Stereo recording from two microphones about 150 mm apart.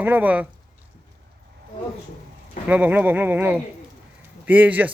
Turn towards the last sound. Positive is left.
turn(degrees=-10)  # may be behind; listen again after turning